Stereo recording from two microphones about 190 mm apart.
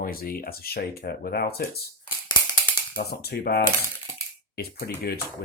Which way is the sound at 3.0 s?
55° left (ahead or behind).